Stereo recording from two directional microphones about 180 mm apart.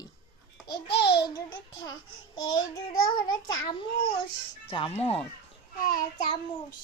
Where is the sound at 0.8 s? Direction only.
65° left (ahead or behind).